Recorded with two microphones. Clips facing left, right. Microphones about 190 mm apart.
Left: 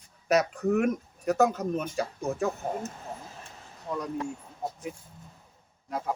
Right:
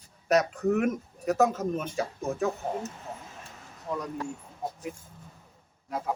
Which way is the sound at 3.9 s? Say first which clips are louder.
Even; 5° right (ahead or behind).